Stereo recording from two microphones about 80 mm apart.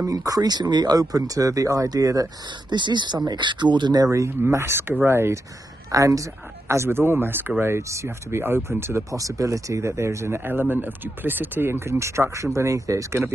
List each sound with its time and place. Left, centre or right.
0.0 s speech: right
2.7 s speech: right
4.0 s speech: right
5.9 s speech: right
6.7 s speech: right
9.1 s speech: right